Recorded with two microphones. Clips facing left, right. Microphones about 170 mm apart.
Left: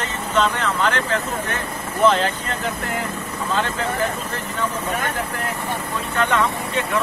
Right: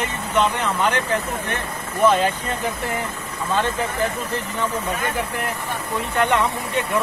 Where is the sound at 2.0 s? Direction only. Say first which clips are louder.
Even; 10° right (ahead or behind).